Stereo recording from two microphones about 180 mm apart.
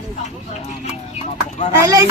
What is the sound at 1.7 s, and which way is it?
Speech, 15° right (ahead or behind).